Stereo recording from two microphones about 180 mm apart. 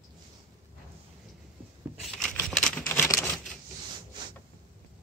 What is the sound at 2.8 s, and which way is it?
Typewriter, 15° left (ahead or behind).